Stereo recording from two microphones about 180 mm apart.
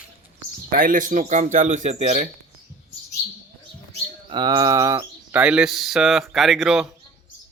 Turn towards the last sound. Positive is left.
turn(degrees=-5)  # may be behind; listen again after turning